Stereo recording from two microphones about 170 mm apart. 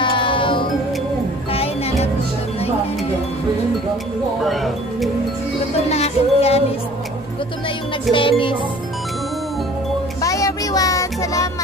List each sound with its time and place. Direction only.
0.0 s music: 30° left (ahead or behind)
4.5 s music: centre (ahead or behind)
5.9 s music: 40° left (ahead or behind)
8.1 s music: 30° left (ahead or behind)
10.2 s child singing: 20° left (ahead or behind)